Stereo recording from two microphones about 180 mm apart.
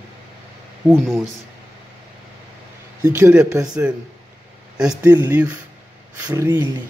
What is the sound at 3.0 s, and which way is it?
Speech, 15° right (ahead or behind).